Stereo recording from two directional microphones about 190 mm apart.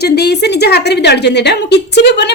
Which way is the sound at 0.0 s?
60° left (ahead or behind).